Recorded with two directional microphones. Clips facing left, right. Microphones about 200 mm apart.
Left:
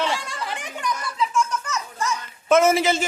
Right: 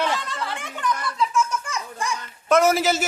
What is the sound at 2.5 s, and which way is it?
Speech, centre (ahead or behind).